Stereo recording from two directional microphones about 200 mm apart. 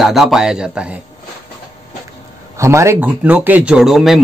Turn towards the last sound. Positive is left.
turn(degrees=0)  # may be behind; listen again after turning